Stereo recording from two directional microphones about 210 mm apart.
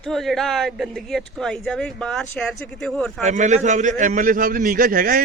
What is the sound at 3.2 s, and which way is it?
A man's voice, 35° right (ahead or behind).